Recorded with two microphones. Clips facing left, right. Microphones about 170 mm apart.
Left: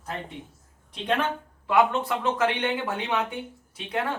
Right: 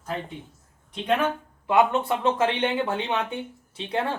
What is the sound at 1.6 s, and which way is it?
Speech, 20° right (ahead or behind).